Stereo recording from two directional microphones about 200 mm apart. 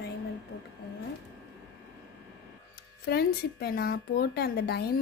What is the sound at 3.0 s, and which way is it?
Speech, 50° left (ahead or behind).